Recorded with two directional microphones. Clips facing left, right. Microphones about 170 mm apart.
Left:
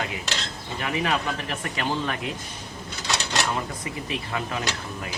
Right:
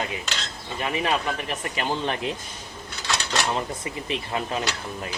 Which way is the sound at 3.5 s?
25° right (ahead or behind).